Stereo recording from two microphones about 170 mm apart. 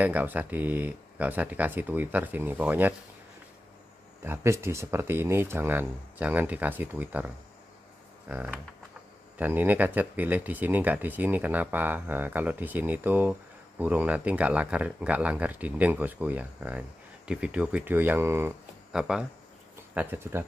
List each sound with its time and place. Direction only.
0.0 s speech: 10° right (ahead or behind)
4.2 s speech: 15° right (ahead or behind)
8.3 s speech: 10° right (ahead or behind)
18.9 s speech: 5° right (ahead or behind)